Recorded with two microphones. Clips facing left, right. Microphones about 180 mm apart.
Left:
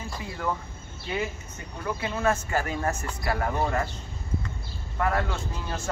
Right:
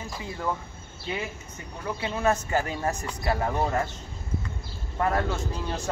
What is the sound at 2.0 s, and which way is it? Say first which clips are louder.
Speech: right 1 dB; 20° right (ahead or behind).